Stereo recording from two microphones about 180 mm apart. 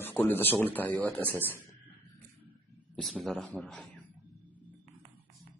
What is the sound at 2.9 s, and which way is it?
Speech, centre (ahead or behind).